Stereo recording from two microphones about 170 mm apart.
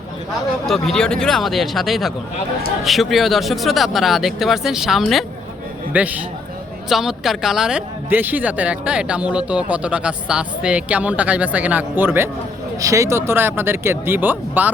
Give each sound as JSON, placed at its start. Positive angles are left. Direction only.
{"t": 0.7, "sound": "speech", "side_deg": 5}